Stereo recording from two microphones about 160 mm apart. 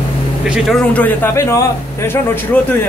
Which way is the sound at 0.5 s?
Centre (ahead or behind).